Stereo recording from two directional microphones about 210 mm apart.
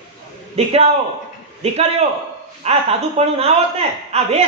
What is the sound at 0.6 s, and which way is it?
Speech, 30° right (ahead or behind).